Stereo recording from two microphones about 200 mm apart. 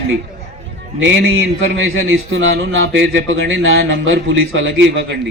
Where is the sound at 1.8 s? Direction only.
85° right.